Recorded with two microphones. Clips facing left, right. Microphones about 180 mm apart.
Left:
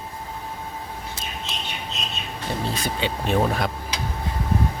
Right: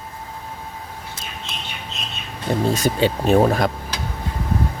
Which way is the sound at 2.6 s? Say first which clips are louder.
Right 9 dB; 45° right (ahead or behind).